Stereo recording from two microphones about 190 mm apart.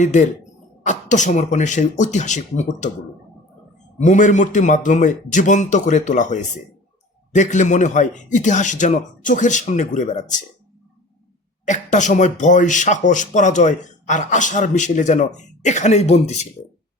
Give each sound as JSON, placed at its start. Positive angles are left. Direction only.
{"t": 0.0, "sound": "speech", "side_deg": 40}
{"t": 4.0, "sound": "speech", "side_deg": 40}
{"t": 11.6, "sound": "speech", "side_deg": 40}